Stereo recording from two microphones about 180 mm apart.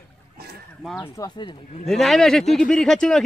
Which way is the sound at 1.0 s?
20° left (ahead or behind).